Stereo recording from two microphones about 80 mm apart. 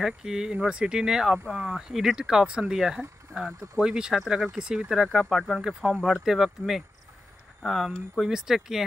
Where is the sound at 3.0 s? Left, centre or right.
Right.